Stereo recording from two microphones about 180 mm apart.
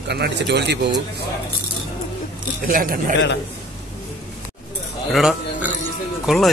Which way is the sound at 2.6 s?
50° right (ahead or behind).